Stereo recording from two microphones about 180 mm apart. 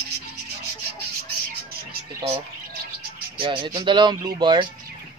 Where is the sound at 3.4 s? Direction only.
30° right (ahead or behind).